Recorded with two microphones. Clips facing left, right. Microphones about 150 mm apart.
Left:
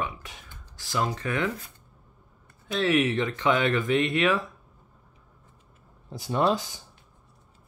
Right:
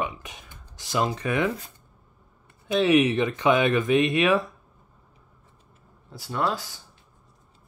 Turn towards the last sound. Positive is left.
turn(degrees=20)  # may be behind; listen again after turning